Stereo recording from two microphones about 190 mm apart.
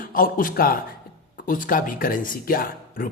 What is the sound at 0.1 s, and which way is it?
Speech, 50° left (ahead or behind).